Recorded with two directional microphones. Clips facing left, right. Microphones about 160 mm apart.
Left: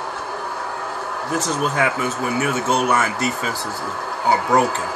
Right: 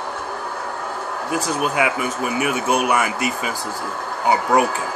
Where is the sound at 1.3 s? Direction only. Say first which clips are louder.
Even; 10° right (ahead or behind).